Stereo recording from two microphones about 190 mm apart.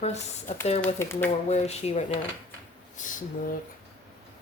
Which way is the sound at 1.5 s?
35° left (ahead or behind).